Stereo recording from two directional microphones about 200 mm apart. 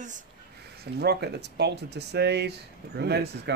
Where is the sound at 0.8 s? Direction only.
55° right (ahead or behind).